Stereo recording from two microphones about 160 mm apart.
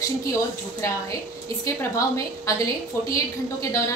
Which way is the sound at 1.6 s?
20° left (ahead or behind).